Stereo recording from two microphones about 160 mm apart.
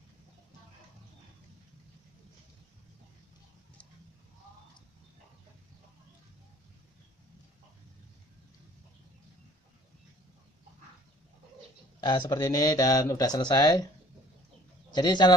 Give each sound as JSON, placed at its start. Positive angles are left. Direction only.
{"t": 12.0, "sound": "speech", "side_deg": 25}
{"t": 14.9, "sound": "speech", "side_deg": 25}